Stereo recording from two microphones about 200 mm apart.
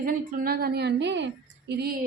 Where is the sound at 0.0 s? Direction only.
45° right (ahead or behind).